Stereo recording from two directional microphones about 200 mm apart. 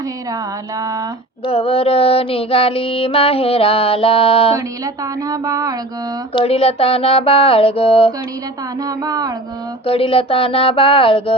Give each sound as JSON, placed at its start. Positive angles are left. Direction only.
{"t": 0.8, "sound": "a sound", "side_deg": -15}
{"t": 1.5, "sound": "child singing", "side_deg": 30}
{"t": 5.3, "sound": "a sound", "side_deg": -20}
{"t": 6.3, "sound": "child singing", "side_deg": 30}
{"t": 9.0, "sound": "mantra", "side_deg": -20}
{"t": 9.8, "sound": "child singing", "side_deg": 25}